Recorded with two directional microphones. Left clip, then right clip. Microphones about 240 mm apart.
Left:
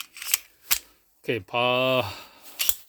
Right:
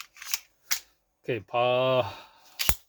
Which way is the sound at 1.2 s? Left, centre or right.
Left.